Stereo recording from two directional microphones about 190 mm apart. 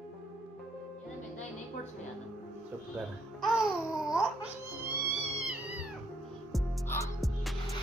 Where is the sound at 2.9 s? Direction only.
5° right (ahead or behind).